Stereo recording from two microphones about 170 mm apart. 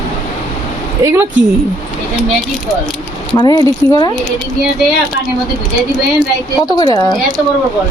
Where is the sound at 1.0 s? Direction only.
20° right (ahead or behind).